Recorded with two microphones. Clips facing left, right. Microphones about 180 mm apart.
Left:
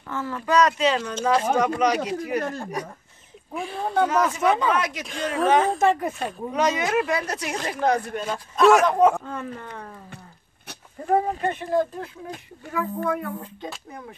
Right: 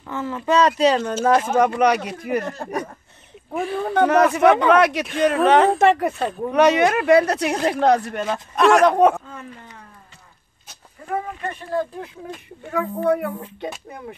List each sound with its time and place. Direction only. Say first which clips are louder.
0.0 s speech: right 3 dB; 20° right (ahead or behind); by 1.1 s 40° right (ahead or behind)
1.5 s speech: right 4 dB; 55° right (ahead or behind)
3.7 s speech: right 4 dB; 75° right (ahead or behind)
9.2 s speech: left 5 dB; 55° left (ahead or behind)
11.1 s speech: left 5 dB; 35° left (ahead or behind)
12.7 s speech: right 5 dB; 70° right (ahead or behind)